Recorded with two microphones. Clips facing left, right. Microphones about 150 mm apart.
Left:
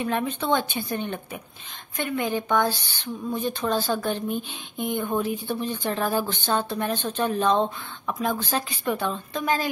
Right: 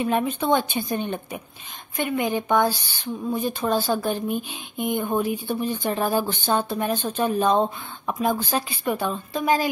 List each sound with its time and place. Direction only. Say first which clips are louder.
0.0 s speech: right 3 dB; 15° right (ahead or behind)